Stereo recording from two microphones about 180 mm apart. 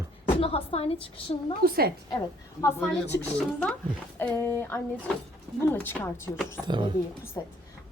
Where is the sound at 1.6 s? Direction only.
60° right (ahead or behind).